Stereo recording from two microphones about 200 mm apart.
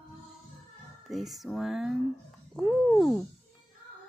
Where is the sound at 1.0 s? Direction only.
Centre (ahead or behind).